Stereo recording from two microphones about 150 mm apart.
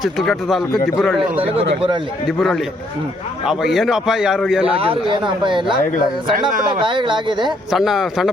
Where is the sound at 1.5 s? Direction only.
35° right (ahead or behind).